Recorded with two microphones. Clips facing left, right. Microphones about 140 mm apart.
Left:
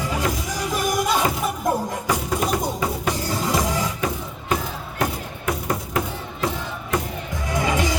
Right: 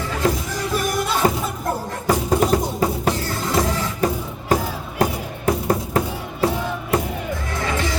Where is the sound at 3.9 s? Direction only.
40° right (ahead or behind).